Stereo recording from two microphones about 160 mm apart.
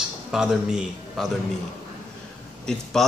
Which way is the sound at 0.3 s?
5° right (ahead or behind).